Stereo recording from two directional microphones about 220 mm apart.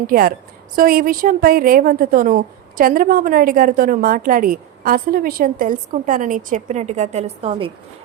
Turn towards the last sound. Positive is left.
turn(degrees=-25)  # may be behind; listen again after turning